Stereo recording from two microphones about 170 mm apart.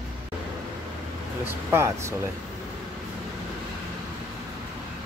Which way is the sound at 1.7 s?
15° right (ahead or behind).